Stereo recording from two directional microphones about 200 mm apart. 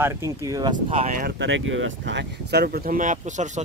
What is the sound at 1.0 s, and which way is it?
Speech, 45° right (ahead or behind).